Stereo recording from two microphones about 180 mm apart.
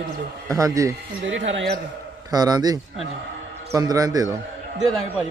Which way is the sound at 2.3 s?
20° right (ahead or behind).